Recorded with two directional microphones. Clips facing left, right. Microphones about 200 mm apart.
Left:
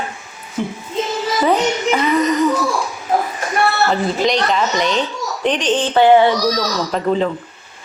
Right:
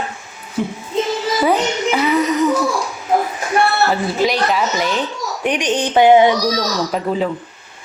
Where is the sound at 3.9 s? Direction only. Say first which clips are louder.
Left 1 dB; 5° right (ahead or behind).